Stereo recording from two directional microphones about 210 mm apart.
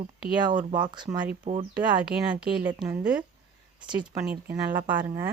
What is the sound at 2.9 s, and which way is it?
Speech, 5° right (ahead or behind).